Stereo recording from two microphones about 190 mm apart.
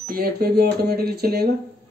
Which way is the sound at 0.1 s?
55° right (ahead or behind).